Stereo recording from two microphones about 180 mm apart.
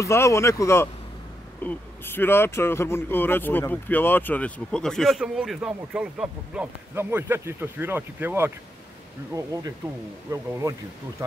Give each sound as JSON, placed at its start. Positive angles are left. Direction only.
{"t": 0.0, "sound": "speech", "side_deg": 15}